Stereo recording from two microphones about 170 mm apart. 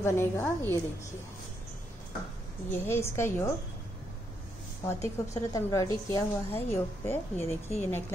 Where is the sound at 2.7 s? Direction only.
15° left (ahead or behind).